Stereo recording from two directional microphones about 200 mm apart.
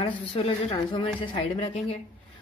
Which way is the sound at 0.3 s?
30° left (ahead or behind).